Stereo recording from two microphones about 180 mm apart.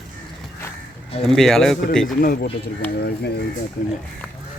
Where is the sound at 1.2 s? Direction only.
Centre (ahead or behind).